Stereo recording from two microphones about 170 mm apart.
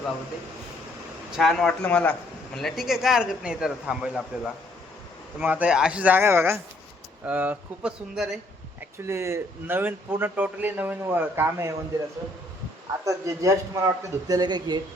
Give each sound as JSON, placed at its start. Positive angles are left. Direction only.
{"t": 1.4, "sound": "a man's voice", "side_deg": 0}
{"t": 5.4, "sound": "a man's voice", "side_deg": -10}
{"t": 9.0, "sound": "speech", "side_deg": -15}
{"t": 13.1, "sound": "speech", "side_deg": -20}